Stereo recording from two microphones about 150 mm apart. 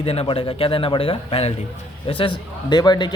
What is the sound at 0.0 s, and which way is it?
A man's voice, 40° left (ahead or behind).